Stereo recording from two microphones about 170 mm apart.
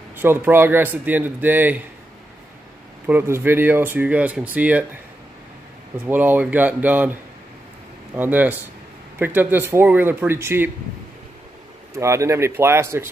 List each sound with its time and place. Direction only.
0.1 s speech: 10° right (ahead or behind)
3.1 s speech: 15° right (ahead or behind)
6.0 s speech: 10° right (ahead or behind)
11.9 s speech: 15° right (ahead or behind)